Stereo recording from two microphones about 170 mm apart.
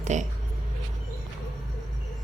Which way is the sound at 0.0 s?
45° right (ahead or behind).